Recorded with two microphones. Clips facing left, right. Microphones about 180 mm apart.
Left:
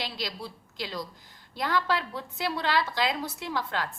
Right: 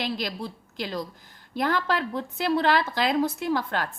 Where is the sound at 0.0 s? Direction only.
50° right (ahead or behind).